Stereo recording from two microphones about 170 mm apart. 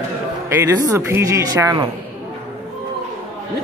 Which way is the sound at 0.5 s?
15° right (ahead or behind).